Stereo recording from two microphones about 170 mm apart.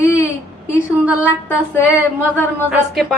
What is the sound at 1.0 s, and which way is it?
Speech, 10° right (ahead or behind).